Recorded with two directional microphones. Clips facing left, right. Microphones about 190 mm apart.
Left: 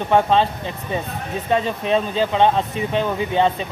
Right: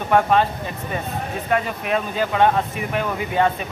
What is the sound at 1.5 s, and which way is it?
Speech, 25° left (ahead or behind).